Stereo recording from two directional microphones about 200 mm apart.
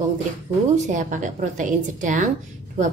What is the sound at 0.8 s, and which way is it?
A woman's voice, 40° right (ahead or behind).